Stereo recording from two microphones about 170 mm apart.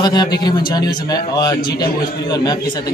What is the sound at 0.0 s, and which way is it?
A man's voice, 25° left (ahead or behind).